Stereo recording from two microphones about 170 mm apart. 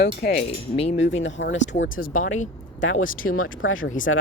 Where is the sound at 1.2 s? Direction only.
90° left.